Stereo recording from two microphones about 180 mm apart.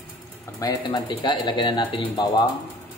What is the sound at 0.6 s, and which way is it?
Speech, 20° left (ahead or behind).